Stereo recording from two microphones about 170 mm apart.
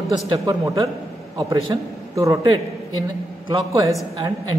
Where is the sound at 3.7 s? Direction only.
20° right (ahead or behind).